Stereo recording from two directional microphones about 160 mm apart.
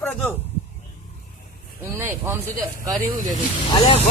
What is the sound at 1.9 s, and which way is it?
Speech, 15° right (ahead or behind).